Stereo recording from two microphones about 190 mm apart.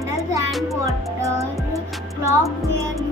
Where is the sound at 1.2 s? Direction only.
15° right (ahead or behind).